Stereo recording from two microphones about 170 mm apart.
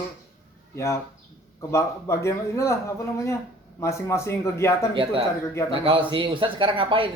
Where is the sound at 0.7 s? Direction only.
15° left (ahead or behind).